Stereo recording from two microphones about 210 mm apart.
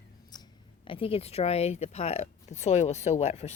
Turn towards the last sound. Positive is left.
turn(degrees=30)  # may be behind; listen again after turning